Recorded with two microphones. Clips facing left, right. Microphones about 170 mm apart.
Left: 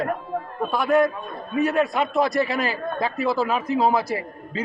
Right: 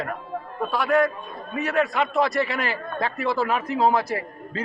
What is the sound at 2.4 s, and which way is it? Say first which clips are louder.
Speech: left 3 dB; 40° left (ahead or behind).